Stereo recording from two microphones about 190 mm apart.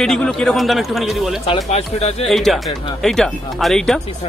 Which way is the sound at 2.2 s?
Centre (ahead or behind).